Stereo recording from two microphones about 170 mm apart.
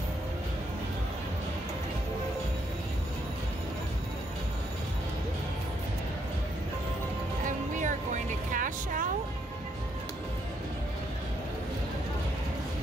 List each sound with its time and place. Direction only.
7.4 s music: 50° right (ahead or behind)